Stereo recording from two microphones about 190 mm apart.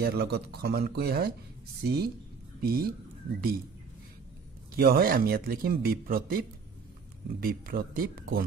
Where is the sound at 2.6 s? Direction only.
50° right (ahead or behind).